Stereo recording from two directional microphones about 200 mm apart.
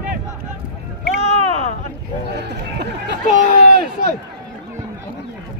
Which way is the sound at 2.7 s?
60° right (ahead or behind).